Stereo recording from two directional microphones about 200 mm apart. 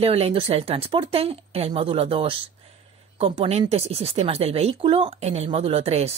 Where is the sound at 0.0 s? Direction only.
30° right (ahead or behind).